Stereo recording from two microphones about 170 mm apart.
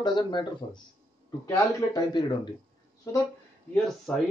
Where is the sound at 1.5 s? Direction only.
20° left (ahead or behind).